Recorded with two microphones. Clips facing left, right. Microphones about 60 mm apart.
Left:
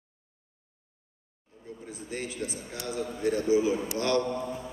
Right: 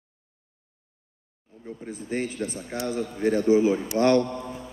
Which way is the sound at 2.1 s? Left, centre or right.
Right.